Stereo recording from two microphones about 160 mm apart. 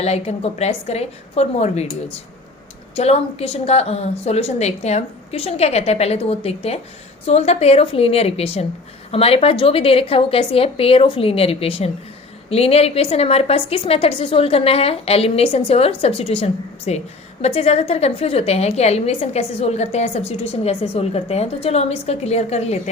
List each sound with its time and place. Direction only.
0.0 s a woman's voice: 40° left (ahead or behind)